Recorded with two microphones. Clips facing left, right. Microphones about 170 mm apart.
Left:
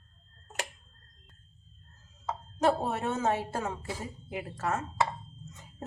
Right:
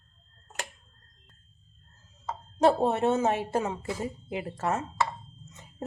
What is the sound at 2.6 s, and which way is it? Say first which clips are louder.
Speech: right 5 dB; 25° right (ahead or behind).